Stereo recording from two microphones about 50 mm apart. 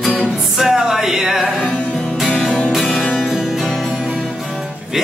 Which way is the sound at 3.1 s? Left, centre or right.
Centre.